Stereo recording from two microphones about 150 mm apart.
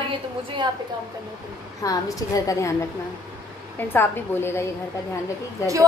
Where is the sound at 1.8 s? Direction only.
20° left (ahead or behind).